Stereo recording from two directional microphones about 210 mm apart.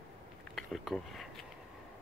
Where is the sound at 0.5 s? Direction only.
Centre (ahead or behind).